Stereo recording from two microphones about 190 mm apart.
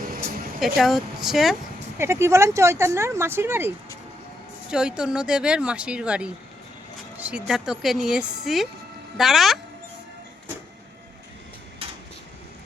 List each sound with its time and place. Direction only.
0.6 s speech: centre (ahead or behind)
2.0 s speech: 15° right (ahead or behind)
4.7 s speech: 5° right (ahead or behind)
11.8 s a sound: 30° right (ahead or behind)